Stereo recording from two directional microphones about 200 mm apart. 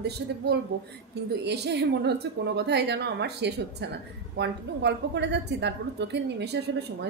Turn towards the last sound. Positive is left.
turn(degrees=-55)  # may be behind; listen again after turning